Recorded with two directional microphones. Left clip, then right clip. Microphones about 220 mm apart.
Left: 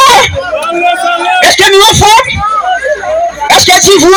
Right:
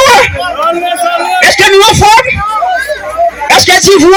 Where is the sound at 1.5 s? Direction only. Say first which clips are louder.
Even; 25° right (ahead or behind).